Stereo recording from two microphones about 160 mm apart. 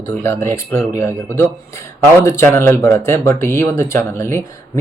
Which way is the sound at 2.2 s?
15° left (ahead or behind).